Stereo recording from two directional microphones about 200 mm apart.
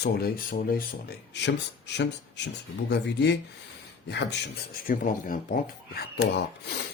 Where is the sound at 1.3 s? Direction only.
60° left (ahead or behind).